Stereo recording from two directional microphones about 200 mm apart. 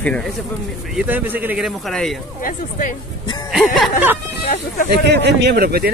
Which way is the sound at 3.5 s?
Centre (ahead or behind).